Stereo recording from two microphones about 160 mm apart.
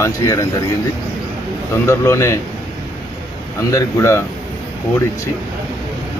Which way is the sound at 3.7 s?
15° left (ahead or behind).